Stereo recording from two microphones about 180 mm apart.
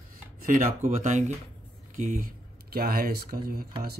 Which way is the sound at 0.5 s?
45° right (ahead or behind).